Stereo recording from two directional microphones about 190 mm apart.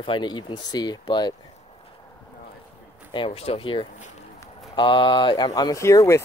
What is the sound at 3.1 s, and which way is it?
Speech, 30° left (ahead or behind).